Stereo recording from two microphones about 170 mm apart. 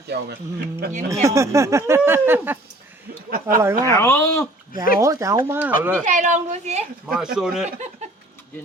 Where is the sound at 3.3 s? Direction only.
55° right (ahead or behind).